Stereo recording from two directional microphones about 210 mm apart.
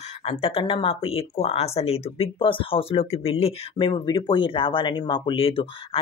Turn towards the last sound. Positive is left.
turn(degrees=25)  # may be behind; listen again after turning